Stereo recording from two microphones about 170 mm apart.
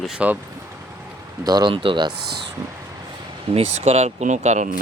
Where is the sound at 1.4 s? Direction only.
25° right (ahead or behind).